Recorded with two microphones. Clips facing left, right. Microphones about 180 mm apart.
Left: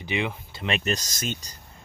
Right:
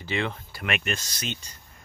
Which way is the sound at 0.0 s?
15° left (ahead or behind).